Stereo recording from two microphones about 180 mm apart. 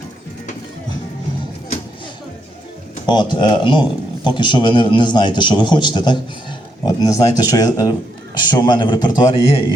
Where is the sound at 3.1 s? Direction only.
25° left (ahead or behind).